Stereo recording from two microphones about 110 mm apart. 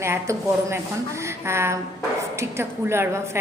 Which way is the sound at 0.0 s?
25° right (ahead or behind).